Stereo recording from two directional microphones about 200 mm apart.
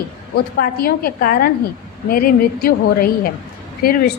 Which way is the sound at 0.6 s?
50° left (ahead or behind).